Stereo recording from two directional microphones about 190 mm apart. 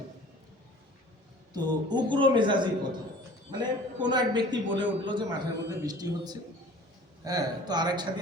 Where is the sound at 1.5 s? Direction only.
25° right (ahead or behind).